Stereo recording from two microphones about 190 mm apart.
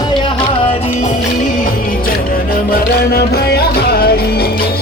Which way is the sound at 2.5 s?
50° left (ahead or behind).